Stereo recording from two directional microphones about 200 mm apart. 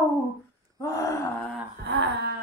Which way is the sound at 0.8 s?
15° left (ahead or behind).